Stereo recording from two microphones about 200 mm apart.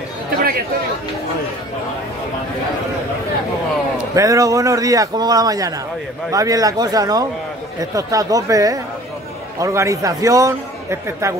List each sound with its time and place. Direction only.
4.1 s a man's voice: 15° right (ahead or behind)